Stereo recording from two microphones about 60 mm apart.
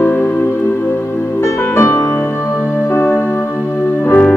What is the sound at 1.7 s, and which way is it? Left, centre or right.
Music, left.